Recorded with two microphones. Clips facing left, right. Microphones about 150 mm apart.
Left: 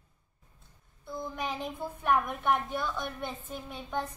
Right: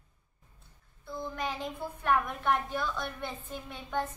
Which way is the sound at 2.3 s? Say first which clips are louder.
Left 1 dB; centre (ahead or behind).